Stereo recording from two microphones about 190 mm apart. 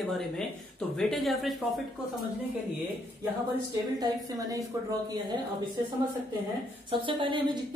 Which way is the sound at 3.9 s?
20° right (ahead or behind).